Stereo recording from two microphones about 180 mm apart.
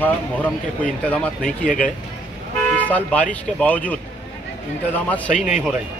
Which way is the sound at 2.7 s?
10° left (ahead or behind).